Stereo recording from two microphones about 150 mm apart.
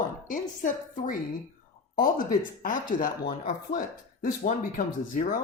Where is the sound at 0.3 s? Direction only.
60° left (ahead or behind).